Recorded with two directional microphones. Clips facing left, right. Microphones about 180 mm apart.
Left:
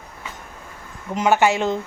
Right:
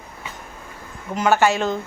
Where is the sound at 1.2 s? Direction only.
20° left (ahead or behind).